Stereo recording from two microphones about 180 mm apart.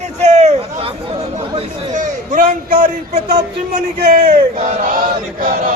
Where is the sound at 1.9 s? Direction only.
45° right (ahead or behind).